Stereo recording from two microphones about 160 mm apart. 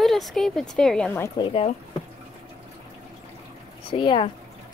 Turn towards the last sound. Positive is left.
turn(degrees=35)  # may be behind; listen again after turning